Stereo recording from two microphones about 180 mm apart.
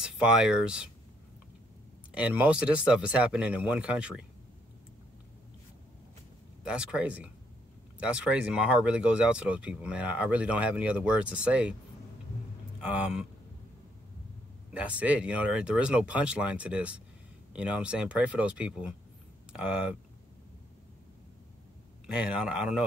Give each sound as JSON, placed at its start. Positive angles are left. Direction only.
{"t": 0.0, "sound": "speech", "side_deg": -5}
{"t": 2.1, "sound": "speech", "side_deg": -5}
{"t": 6.6, "sound": "speech", "side_deg": -5}
{"t": 12.9, "sound": "speech", "side_deg": -5}
{"t": 14.7, "sound": "speech", "side_deg": -5}
{"t": 22.0, "sound": "speech", "side_deg": -5}